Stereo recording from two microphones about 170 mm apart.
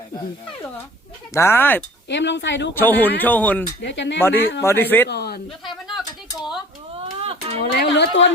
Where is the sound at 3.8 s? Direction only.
90° left.